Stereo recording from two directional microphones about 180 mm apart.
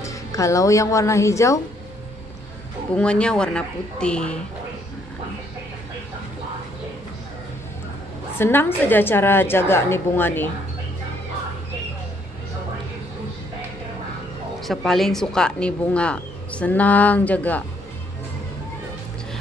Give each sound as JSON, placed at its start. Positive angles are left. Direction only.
{"t": 0.0, "sound": "a woman's voice", "side_deg": 15}
{"t": 2.9, "sound": "speech", "side_deg": 5}
{"t": 8.4, "sound": "a woman's voice", "side_deg": 10}
{"t": 14.6, "sound": "a woman's voice", "side_deg": 0}